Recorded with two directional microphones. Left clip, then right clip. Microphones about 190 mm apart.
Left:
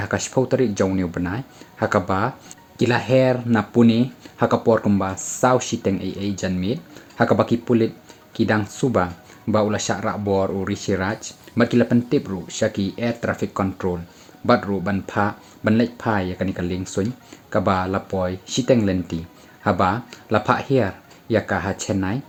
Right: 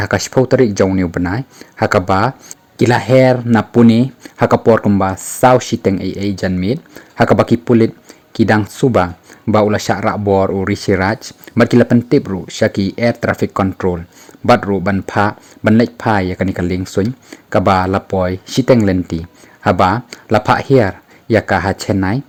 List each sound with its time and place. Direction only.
0.0 s speech: 45° right (ahead or behind)